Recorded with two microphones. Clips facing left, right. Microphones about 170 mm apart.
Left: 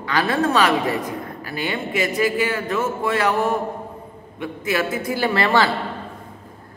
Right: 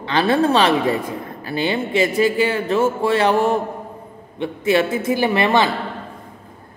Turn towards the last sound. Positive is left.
turn(degrees=-20)  # may be behind; listen again after turning